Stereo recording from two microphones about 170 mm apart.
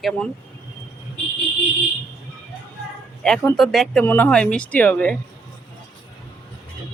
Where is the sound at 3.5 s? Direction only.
Centre (ahead or behind).